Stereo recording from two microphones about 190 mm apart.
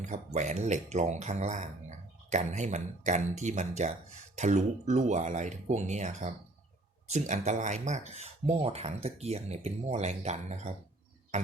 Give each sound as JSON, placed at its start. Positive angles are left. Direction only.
{"t": 0.3, "sound": "speech", "side_deg": -40}